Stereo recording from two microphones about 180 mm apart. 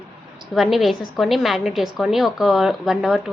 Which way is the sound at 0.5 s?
Centre (ahead or behind).